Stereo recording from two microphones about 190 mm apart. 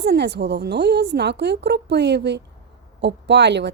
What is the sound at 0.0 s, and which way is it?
A woman's voice, 60° right (ahead or behind).